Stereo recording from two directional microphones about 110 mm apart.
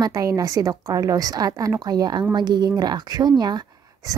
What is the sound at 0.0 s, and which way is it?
A woman's voice, 30° right (ahead or behind).